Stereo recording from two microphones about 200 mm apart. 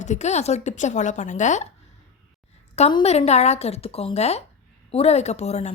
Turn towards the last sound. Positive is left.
turn(degrees=35)  # may be behind; listen again after turning